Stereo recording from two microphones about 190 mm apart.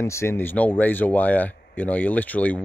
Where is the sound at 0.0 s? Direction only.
15° left (ahead or behind).